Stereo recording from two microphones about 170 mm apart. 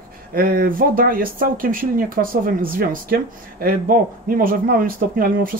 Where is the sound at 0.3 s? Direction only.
60° right (ahead or behind).